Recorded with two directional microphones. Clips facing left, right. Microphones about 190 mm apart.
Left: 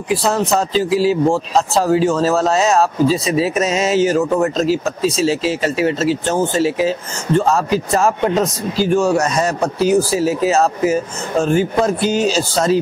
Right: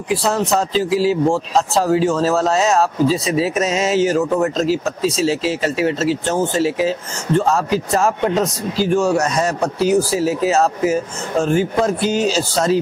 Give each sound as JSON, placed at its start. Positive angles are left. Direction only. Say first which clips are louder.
{"t": 0.1, "sound": "speech", "louder": "left 1 dB", "side_deg": 5}
{"t": 4.2, "sound": "speech", "louder": "left 1 dB", "side_deg": 20}
{"t": 4.6, "sound": "speech", "louder": "left 1 dB", "side_deg": 5}